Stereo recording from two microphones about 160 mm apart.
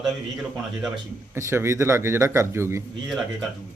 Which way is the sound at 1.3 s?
15° right (ahead or behind).